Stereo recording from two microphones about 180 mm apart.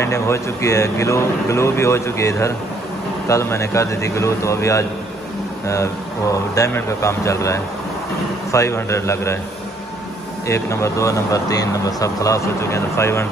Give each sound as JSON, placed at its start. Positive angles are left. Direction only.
{"t": 0.0, "sound": "speech", "side_deg": 15}
{"t": 10.5, "sound": "speech", "side_deg": 15}